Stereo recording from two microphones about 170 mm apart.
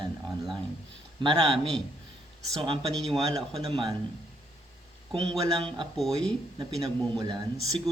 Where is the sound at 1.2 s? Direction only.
30° right (ahead or behind).